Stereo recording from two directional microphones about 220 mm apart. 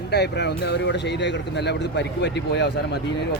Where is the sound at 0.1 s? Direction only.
50° left (ahead or behind).